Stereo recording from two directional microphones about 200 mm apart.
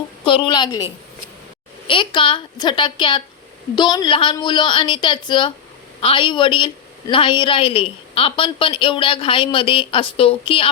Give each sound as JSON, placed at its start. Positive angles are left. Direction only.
{"t": 0.3, "sound": "a woman's voice", "side_deg": 25}
{"t": 1.9, "sound": "a woman's voice", "side_deg": 25}